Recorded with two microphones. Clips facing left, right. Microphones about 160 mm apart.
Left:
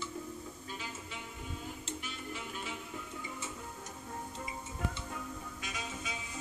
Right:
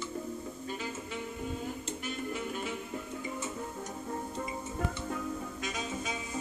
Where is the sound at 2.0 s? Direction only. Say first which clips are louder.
Right 7 dB; 50° right (ahead or behind).